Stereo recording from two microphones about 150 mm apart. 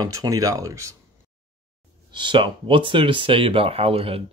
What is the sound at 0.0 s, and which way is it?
Speech, 25° right (ahead or behind).